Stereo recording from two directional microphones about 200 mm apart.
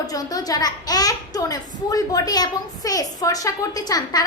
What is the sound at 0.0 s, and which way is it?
A child's voice, 20° left (ahead or behind).